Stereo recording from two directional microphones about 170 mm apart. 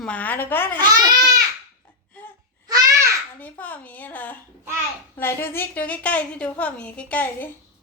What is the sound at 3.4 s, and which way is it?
A woman's voice, 10° left (ahead or behind).